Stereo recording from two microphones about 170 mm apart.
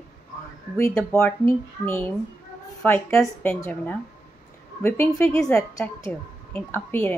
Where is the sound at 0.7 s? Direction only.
15° left (ahead or behind).